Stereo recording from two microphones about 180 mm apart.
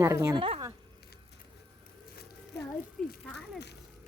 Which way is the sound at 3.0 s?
5° left (ahead or behind).